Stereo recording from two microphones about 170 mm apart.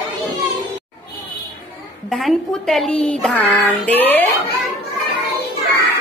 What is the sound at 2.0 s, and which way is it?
A woman's voice, centre (ahead or behind).